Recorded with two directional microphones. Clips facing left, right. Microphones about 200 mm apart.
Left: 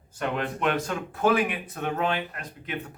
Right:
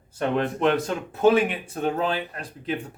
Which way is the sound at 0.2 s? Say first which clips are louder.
Right 5 dB; 30° right (ahead or behind).